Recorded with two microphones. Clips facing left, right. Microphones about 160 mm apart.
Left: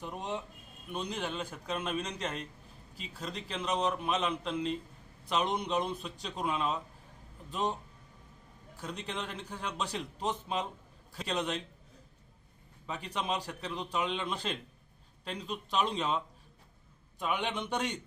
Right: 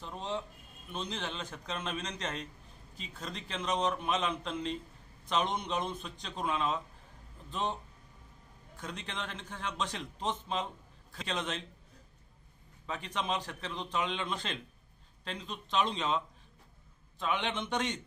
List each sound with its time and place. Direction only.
0.0 s a man's voice: 15° left (ahead or behind)
12.9 s a man's voice: 5° left (ahead or behind)